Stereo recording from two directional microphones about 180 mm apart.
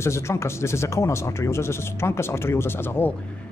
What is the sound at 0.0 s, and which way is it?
Speech, 15° left (ahead or behind).